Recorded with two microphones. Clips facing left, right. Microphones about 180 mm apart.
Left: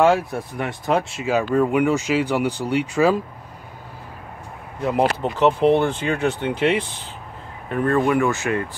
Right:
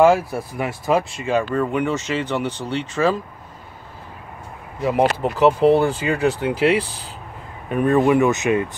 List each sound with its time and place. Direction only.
0.0 s speech: centre (ahead or behind)
5.2 s speech: 5° right (ahead or behind)
7.7 s speech: 15° right (ahead or behind)